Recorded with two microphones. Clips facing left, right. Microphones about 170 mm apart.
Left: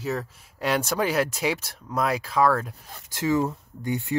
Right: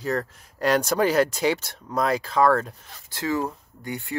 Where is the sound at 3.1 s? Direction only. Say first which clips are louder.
Left 3 dB; 15° left (ahead or behind).